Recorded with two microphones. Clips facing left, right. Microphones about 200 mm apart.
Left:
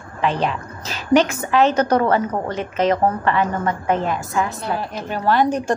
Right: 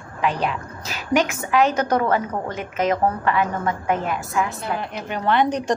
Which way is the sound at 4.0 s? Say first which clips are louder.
Left 2 dB; 35° left (ahead or behind).